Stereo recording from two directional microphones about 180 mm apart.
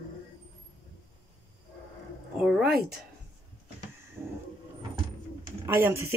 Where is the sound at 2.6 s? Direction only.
60° right (ahead or behind).